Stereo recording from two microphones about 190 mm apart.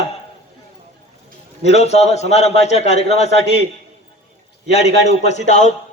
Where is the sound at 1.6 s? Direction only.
35° left (ahead or behind).